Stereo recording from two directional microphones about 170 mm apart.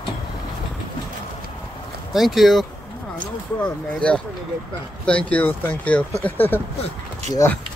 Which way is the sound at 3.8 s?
5° left (ahead or behind).